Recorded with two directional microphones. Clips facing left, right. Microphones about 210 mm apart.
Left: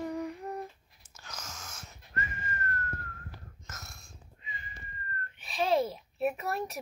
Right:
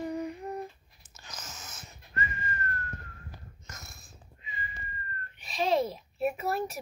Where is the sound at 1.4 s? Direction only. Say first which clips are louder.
Even; 5° right (ahead or behind).